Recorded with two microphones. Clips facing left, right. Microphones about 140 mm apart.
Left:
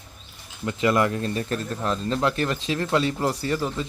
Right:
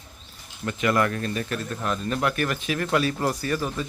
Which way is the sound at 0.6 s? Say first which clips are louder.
Left 2 dB; 20° left (ahead or behind).